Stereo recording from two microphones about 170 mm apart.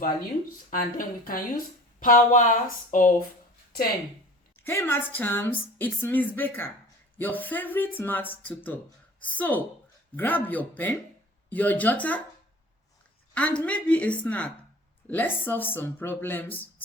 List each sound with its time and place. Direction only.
0.7 s a woman's voice: 55° left (ahead or behind)
4.6 s a woman's voice: 15° left (ahead or behind)
13.3 s a woman's voice: 5° left (ahead or behind)